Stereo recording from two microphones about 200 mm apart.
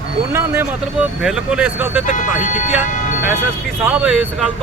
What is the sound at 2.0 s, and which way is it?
Speech, 40° left (ahead or behind).